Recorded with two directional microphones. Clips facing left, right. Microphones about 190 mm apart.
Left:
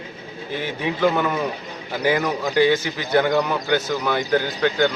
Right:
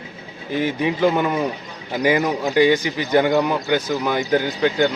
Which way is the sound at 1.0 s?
10° right (ahead or behind).